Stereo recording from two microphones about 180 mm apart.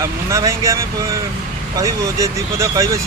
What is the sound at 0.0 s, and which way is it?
Speech, 15° right (ahead or behind).